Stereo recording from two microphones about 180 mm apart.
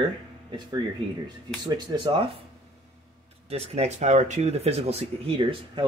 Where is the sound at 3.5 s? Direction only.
35° right (ahead or behind).